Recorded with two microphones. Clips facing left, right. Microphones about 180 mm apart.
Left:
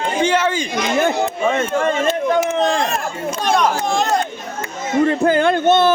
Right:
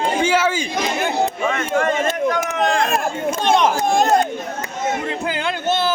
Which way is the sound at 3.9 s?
50° right (ahead or behind).